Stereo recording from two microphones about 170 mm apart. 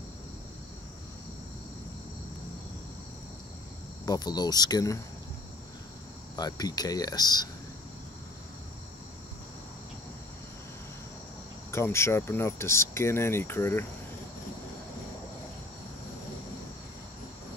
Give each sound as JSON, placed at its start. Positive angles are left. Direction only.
{"t": 4.0, "sound": "speech", "side_deg": 25}
{"t": 6.3, "sound": "speech", "side_deg": 25}
{"t": 11.7, "sound": "speech", "side_deg": 15}